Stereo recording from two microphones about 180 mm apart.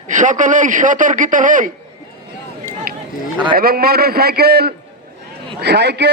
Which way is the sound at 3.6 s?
55° right (ahead or behind).